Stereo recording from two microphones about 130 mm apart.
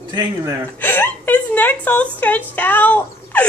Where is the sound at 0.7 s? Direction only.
15° left (ahead or behind).